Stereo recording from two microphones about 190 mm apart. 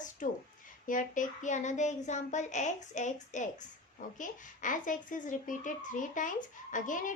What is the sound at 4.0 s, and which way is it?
A woman's voice, 45° left (ahead or behind).